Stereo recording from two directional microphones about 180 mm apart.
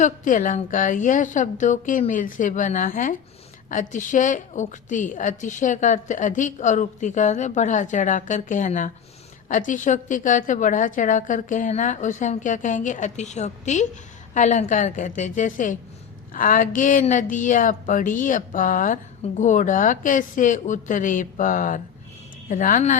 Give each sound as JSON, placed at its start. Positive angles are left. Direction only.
{"t": 0.0, "sound": "a woman's voice", "side_deg": 45}